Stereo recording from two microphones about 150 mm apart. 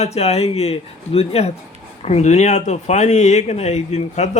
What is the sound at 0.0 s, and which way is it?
Speech, 45° left (ahead or behind).